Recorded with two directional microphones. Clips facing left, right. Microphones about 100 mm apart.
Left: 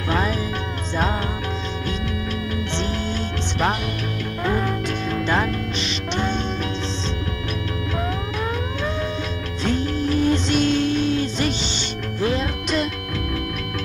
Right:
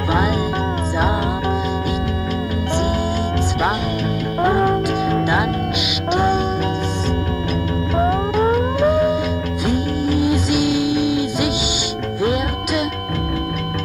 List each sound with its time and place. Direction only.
0.1 s music: 10° right (ahead or behind)
4.4 s music: 40° right (ahead or behind)
5.2 s music: 10° right (ahead or behind)
7.9 s music: 35° right (ahead or behind)
9.7 s music: 10° right (ahead or behind)